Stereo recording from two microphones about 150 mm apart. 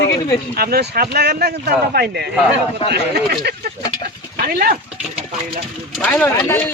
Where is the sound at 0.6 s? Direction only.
90° right.